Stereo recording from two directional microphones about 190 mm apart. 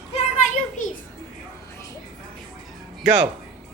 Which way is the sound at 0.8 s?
40° left (ahead or behind).